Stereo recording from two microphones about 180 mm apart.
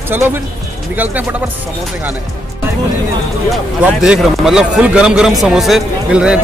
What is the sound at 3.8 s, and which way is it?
Speech, 5° right (ahead or behind).